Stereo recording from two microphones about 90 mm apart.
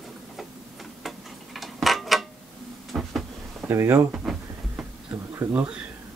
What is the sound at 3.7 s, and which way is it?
Speech, 30° right (ahead or behind).